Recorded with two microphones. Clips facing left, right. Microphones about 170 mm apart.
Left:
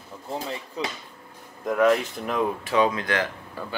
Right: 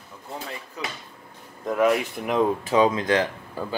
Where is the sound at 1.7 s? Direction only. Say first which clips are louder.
Left 1 dB; 5° right (ahead or behind).